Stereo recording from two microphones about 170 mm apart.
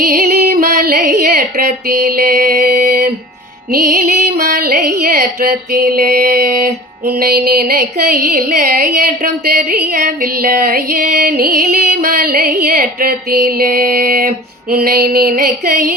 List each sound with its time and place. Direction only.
0.0 s female singing: 60° right (ahead or behind)
3.7 s music: 60° right (ahead or behind)
9.9 s music: 50° right (ahead or behind)